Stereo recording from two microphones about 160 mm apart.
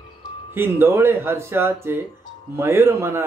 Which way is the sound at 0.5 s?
15° right (ahead or behind).